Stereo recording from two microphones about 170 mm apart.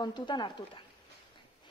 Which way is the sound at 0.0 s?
25° left (ahead or behind).